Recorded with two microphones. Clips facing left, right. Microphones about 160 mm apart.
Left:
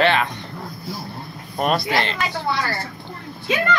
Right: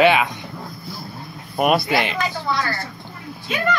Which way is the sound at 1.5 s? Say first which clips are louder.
Right 2 dB; 10° right (ahead or behind).